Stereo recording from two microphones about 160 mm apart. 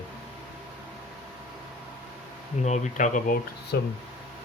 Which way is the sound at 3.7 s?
90° left.